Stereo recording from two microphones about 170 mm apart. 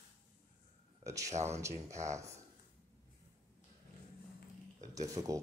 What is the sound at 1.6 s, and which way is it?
Speech, 15° right (ahead or behind).